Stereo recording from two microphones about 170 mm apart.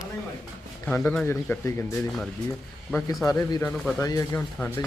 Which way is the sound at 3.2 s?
20° left (ahead or behind).